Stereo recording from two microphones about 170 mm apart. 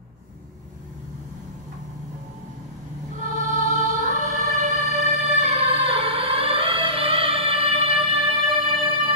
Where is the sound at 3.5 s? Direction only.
45° right (ahead or behind).